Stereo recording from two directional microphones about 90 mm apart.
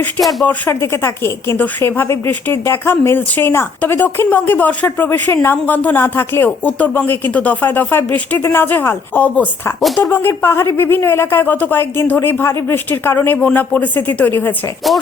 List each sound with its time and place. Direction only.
0.2 s speech: centre (ahead or behind)
0.4 s speech: 25° left (ahead or behind)
1.5 s speech: 20° left (ahead or behind)
9.8 s speech: centre (ahead or behind)
10.1 s speech: 25° left (ahead or behind)